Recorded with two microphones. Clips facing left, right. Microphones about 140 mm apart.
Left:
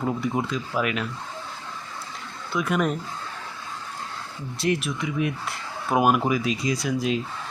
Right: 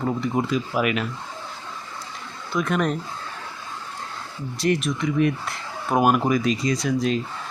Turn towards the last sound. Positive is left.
turn(degrees=5)  # may be behind; listen again after turning